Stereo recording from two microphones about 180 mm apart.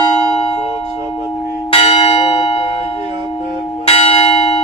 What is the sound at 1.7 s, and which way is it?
Church bell, 30° left (ahead or behind).